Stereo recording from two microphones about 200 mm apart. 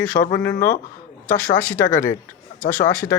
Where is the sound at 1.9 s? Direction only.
10° left (ahead or behind).